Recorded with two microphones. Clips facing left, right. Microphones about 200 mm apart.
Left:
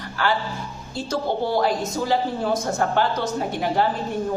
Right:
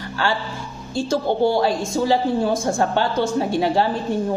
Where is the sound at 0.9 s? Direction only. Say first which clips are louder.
Right 4 dB; 25° right (ahead or behind).